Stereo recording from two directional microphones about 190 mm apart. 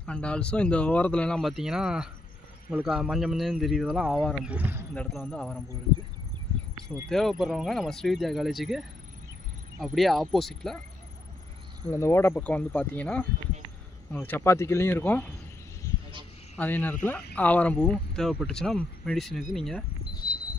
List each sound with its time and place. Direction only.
0.0 s speech: 5° left (ahead or behind)
4.5 s speech: 10° right (ahead or behind)
4.9 s speech: 5° left (ahead or behind)
7.1 s speech: centre (ahead or behind)
9.9 s speech: centre (ahead or behind)
11.8 s speech: 15° left (ahead or behind)
16.5 s speech: 10° left (ahead or behind)
20.2 s a sound: 20° left (ahead or behind)